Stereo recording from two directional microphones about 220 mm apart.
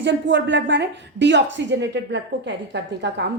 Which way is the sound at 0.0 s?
55° right (ahead or behind).